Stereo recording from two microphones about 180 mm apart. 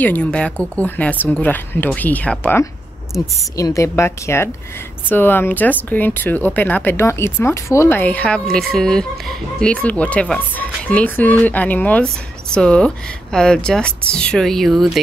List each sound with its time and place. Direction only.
0.0 s a woman's voice: 10° left (ahead or behind)